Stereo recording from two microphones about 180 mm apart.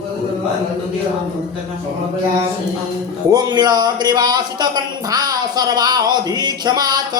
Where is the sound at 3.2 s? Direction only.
20° right (ahead or behind).